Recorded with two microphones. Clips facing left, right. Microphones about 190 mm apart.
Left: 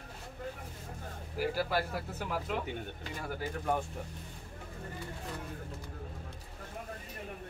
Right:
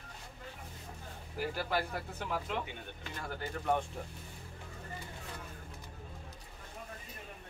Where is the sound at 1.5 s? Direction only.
5° left (ahead or behind).